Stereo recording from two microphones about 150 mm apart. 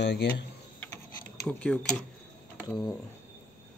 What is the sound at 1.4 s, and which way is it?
Speech, 5° left (ahead or behind).